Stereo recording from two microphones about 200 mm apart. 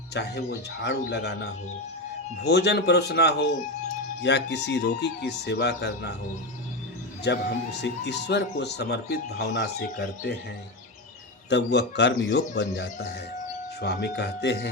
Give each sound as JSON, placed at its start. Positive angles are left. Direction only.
{"t": 0.1, "sound": "speech", "side_deg": 55}
{"t": 7.3, "sound": "speech", "side_deg": 60}
{"t": 11.4, "sound": "speech", "side_deg": 60}